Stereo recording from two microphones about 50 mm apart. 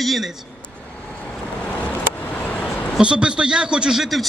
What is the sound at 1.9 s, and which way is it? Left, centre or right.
Vehicle, left.